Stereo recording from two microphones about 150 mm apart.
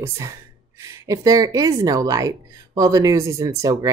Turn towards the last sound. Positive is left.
turn(degrees=-25)  # may be behind; listen again after turning